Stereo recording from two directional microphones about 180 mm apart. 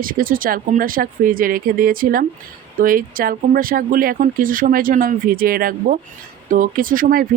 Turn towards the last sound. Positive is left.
turn(degrees=-50)  # may be behind; listen again after turning